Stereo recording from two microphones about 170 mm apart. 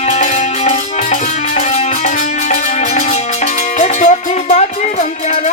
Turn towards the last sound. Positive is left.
turn(degrees=45)  # may be behind; listen again after turning